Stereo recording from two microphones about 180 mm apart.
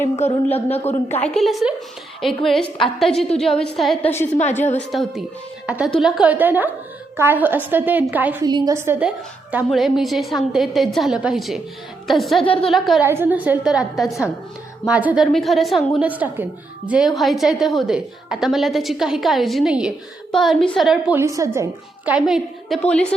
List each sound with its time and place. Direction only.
0.0 s a woman's voice: 40° left (ahead or behind)
1.1 s a woman's voice: 5° left (ahead or behind)
8.4 s a woman's voice: 20° right (ahead or behind); by 12.4 s centre (ahead or behind)
12.4 s a woman's voice: 30° left (ahead or behind)
12.7 s a woman's voice: centre (ahead or behind)
13.1 s a woman's voice: 10° right (ahead or behind)
21.2 s a woman's voice: 15° right (ahead or behind); by 23.0 s 5° left (ahead or behind)